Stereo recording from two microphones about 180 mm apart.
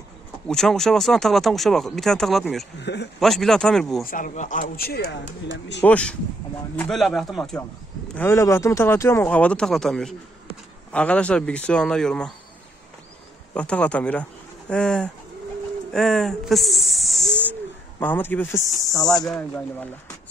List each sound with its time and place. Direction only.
0.5 s speech: centre (ahead or behind)
2.8 s a man's voice: 70° left (ahead or behind)
3.2 s speech: centre (ahead or behind)
4.0 s a man's voice: 50° left (ahead or behind); by 5.9 s 80° left
5.9 s speech: 5° left (ahead or behind)
8.1 s speech: 15° left (ahead or behind)
13.6 s speech: 5° left (ahead or behind)
19.2 s speech: 5° left (ahead or behind)